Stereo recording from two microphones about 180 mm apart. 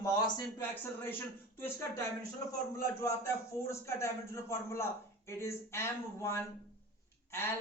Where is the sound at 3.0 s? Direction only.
15° left (ahead or behind).